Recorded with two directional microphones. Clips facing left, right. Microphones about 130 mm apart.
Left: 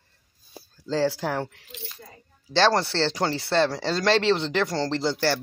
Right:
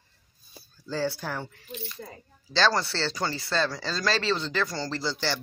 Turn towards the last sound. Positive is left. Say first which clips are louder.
# left 6 dB
turn(degrees=65)  # may be behind; listen again after turning